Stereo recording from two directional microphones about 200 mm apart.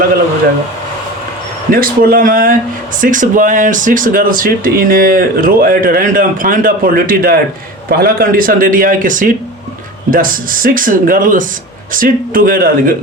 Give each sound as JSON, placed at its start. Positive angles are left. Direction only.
{"t": 1.7, "sound": "speech", "side_deg": -45}